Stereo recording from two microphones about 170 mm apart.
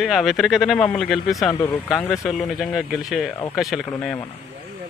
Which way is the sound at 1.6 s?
10° left (ahead or behind).